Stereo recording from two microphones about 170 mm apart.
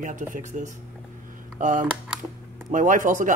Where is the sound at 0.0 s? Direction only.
50° right (ahead or behind).